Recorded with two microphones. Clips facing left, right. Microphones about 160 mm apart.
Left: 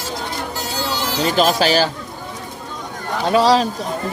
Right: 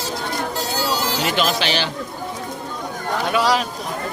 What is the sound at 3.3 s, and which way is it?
Speech, 30° left (ahead or behind).